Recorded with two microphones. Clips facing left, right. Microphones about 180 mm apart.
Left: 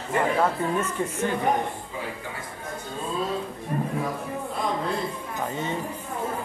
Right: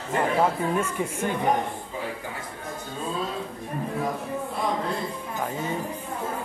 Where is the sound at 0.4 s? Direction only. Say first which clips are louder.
Right 1 dB; 10° right (ahead or behind).